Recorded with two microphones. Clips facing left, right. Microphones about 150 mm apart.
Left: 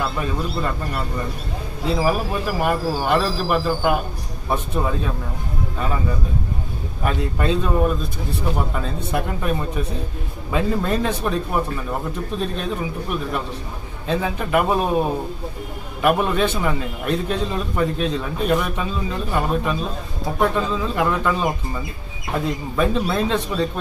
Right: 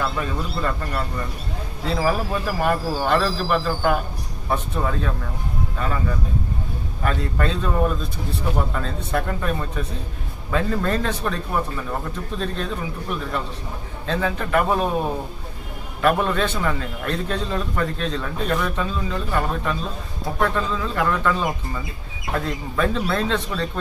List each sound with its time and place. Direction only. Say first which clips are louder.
0.2 s a man's voice: left 2 dB; 10° left (ahead or behind)
7.0 s a man's voice: left 1 dB; 15° left (ahead or behind)